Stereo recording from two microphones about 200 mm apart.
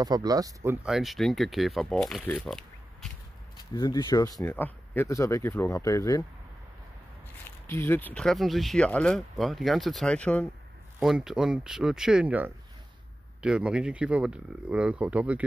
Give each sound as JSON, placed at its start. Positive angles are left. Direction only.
{"t": 0.0, "sound": "speech", "side_deg": -20}
{"t": 0.8, "sound": "speech", "side_deg": 0}
{"t": 3.7, "sound": "speech", "side_deg": 20}
{"t": 7.6, "sound": "speech", "side_deg": 10}